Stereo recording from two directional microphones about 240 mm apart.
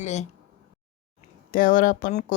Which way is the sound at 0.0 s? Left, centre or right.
Left.